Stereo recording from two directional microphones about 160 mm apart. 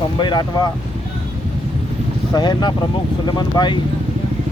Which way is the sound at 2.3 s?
25° left (ahead or behind).